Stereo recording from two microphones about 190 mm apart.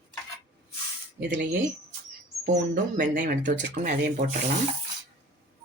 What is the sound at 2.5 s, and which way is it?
Speech, 45° right (ahead or behind).